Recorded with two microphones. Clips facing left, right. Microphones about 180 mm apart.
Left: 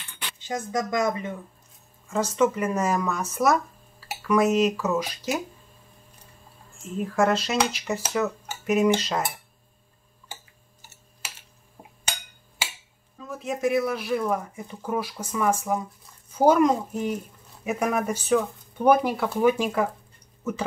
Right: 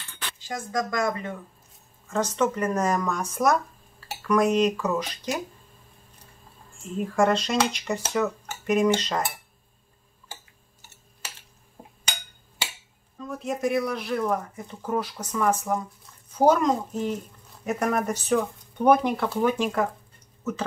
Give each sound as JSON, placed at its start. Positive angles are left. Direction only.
{"t": 0.4, "sound": "speech", "side_deg": 20}
{"t": 2.0, "sound": "speech", "side_deg": 10}
{"t": 6.8, "sound": "speech", "side_deg": 0}
{"t": 13.2, "sound": "speech", "side_deg": 0}